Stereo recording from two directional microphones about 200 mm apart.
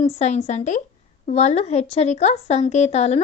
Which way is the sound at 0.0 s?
30° left (ahead or behind).